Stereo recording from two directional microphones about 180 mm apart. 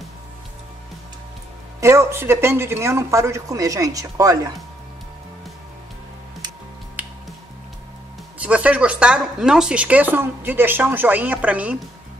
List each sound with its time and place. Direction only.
1.8 s speech: 15° right (ahead or behind)
7.0 s finger snapping: 10° right (ahead or behind)
8.4 s speech: 5° right (ahead or behind)